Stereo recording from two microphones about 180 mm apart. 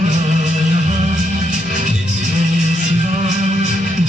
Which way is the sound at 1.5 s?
45° right (ahead or behind).